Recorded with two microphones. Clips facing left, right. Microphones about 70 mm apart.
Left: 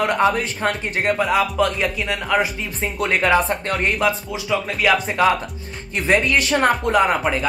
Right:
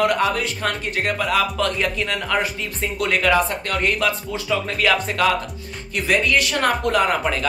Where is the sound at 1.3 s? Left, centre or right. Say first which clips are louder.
Left 2 dB; centre.